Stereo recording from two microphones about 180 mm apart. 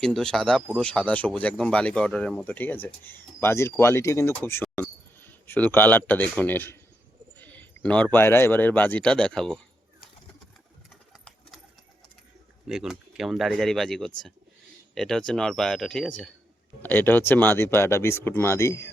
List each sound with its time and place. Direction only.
0.0 s speech: 5° left (ahead or behind)
10.4 s sewing machine: 5° left (ahead or behind)
12.6 s speech: 5° right (ahead or behind); by 18.9 s 15° left (ahead or behind)